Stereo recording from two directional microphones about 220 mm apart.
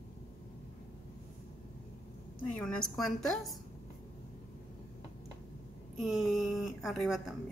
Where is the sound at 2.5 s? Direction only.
5° left (ahead or behind).